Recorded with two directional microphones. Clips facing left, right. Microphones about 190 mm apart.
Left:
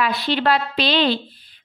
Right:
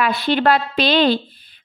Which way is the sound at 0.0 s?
50° right (ahead or behind).